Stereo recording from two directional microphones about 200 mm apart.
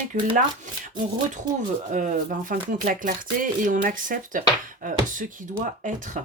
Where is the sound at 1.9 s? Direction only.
40° right (ahead or behind).